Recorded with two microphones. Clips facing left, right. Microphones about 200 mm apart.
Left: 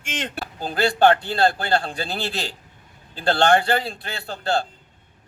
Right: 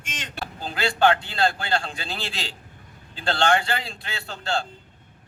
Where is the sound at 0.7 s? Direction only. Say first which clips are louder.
Left 4 dB; 40° left (ahead or behind).